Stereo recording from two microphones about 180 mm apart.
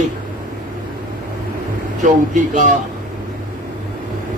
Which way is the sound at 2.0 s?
45° right (ahead or behind).